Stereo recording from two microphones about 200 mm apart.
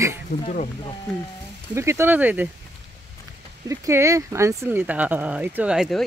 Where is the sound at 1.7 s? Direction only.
15° right (ahead or behind).